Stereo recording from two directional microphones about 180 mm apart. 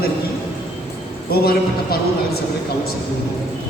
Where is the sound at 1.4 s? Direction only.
60° left (ahead or behind).